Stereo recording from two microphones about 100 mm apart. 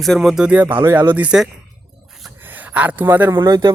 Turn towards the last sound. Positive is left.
turn(degrees=-45)  # may be behind; listen again after turning